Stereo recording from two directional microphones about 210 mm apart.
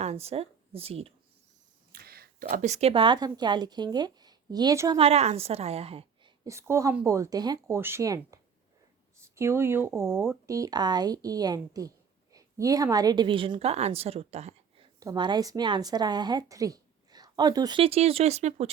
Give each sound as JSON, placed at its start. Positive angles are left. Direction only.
{"t": 0.0, "sound": "speech", "side_deg": -30}
{"t": 1.9, "sound": "speech", "side_deg": -45}
{"t": 4.9, "sound": "a woman's voice", "side_deg": -30}
{"t": 6.4, "sound": "a woman's voice", "side_deg": -15}
{"t": 15.0, "sound": "a woman's voice", "side_deg": -20}